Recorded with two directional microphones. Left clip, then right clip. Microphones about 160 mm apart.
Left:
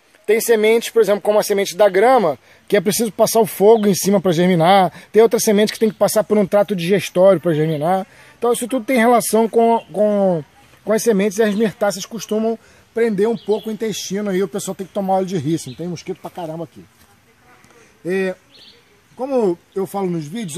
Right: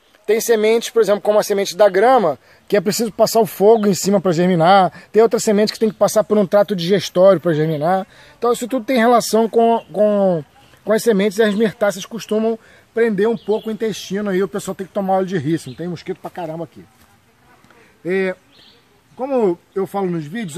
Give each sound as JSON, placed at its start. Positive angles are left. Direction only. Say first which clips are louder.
{"t": 0.3, "sound": "speech", "louder": "left 1 dB", "side_deg": 10}
{"t": 18.0, "sound": "speech", "louder": "right 1 dB", "side_deg": 20}